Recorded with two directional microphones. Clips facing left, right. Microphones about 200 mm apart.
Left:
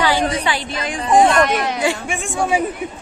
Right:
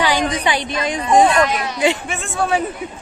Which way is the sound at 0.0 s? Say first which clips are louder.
Even; 15° right (ahead or behind).